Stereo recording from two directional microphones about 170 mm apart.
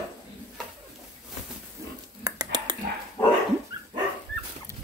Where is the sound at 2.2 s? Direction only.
20° right (ahead or behind).